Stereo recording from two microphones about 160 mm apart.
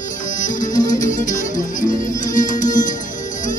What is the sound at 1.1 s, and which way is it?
Music, 55° left (ahead or behind).